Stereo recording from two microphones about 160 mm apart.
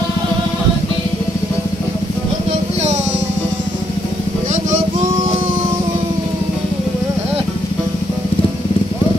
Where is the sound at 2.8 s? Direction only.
45° right (ahead or behind).